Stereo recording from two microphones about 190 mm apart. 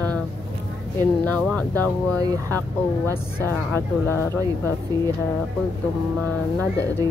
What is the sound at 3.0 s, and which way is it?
Speech, 10° left (ahead or behind).